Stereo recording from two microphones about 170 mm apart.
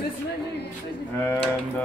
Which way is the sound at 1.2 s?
15° left (ahead or behind).